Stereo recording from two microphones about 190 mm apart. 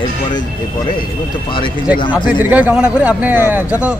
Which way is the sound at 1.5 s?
25° left (ahead or behind).